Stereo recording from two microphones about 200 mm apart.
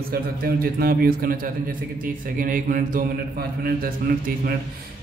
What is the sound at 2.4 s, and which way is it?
A man's voice, 45° right (ahead or behind).